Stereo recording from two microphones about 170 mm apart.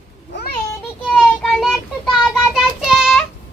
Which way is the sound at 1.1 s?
Centre (ahead or behind).